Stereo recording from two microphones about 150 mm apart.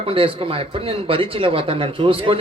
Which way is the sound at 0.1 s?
35° right (ahead or behind).